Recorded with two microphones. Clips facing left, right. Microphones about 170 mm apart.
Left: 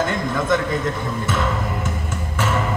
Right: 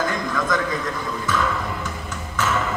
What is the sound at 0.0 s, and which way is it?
A man's voice, 25° left (ahead or behind).